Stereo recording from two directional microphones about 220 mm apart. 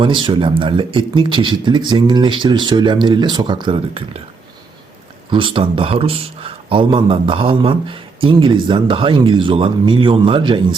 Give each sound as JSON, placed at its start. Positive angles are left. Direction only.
{"t": 0.0, "sound": "a man's voice", "side_deg": -20}
{"t": 5.3, "sound": "a man's voice", "side_deg": -25}